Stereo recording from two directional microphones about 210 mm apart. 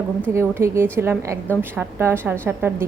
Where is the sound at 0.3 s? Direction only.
15° right (ahead or behind).